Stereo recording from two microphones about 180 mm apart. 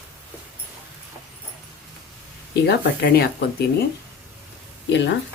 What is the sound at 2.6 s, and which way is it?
Speech, 60° left (ahead or behind).